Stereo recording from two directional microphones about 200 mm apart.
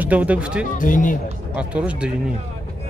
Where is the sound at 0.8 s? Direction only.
40° left (ahead or behind).